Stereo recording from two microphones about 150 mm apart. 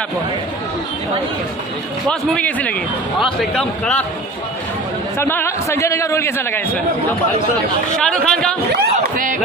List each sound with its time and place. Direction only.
2.0 s a man's voice: 5° left (ahead or behind)
5.2 s a man's voice: 15° left (ahead or behind)
8.0 s a man's voice: 5° left (ahead or behind)
9.1 s speech: 65° right (ahead or behind)